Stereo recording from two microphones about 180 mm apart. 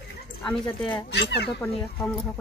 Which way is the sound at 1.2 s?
70° left (ahead or behind).